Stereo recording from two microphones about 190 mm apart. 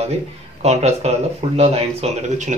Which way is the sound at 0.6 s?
35° right (ahead or behind).